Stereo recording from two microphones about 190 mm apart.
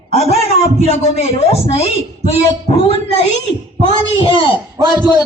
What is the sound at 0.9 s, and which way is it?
A man's voice, 30° left (ahead or behind).